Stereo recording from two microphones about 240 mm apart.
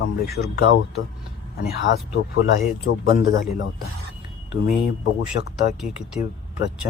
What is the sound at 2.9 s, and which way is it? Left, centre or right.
Speech, left.